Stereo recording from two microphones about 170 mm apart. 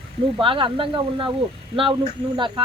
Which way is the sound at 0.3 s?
30° right (ahead or behind).